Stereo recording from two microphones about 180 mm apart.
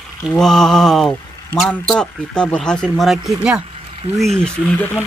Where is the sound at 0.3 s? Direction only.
5° left (ahead or behind).